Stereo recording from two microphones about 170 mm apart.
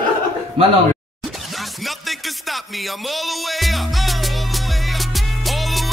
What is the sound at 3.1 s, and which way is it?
Music, centre (ahead or behind).